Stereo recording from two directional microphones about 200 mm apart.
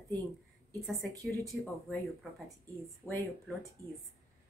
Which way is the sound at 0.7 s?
15° right (ahead or behind).